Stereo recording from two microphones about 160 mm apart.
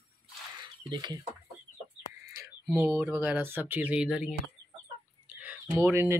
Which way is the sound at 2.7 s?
15° right (ahead or behind).